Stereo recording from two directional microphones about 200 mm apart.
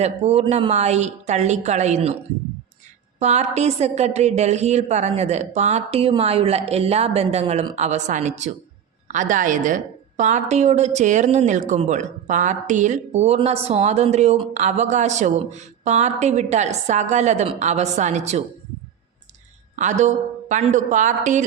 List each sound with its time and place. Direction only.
0.0 s a woman's voice: 30° right (ahead or behind)
3.2 s a woman's voice: 35° right (ahead or behind)
19.7 s a woman's voice: 35° right (ahead or behind)